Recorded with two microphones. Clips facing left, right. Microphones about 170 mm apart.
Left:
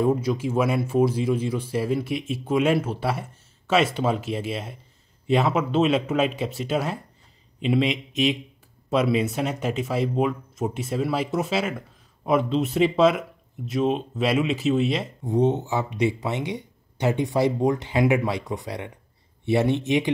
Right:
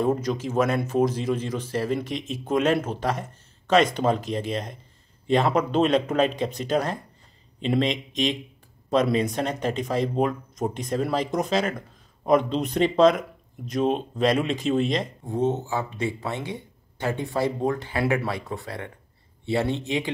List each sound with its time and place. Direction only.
0.0 s speech: 10° left (ahead or behind)
15.2 s speech: 20° left (ahead or behind)